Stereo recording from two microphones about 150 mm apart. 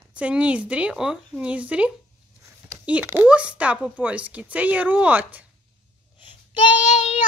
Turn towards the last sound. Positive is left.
turn(degrees=50)  # may be behind; listen again after turning